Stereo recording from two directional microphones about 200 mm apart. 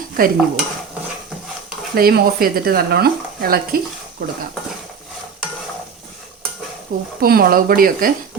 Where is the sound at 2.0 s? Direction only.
50° right (ahead or behind).